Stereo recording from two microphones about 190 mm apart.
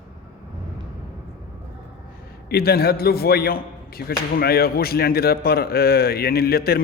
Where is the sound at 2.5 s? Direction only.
55° left (ahead or behind).